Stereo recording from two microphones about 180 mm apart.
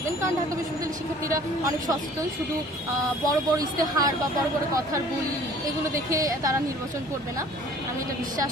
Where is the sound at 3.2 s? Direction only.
20° right (ahead or behind).